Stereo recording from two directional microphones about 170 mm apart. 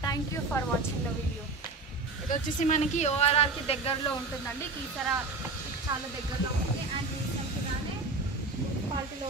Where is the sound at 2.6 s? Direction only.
45° left (ahead or behind).